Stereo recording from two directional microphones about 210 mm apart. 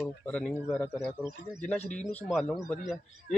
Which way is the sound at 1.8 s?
35° left (ahead or behind).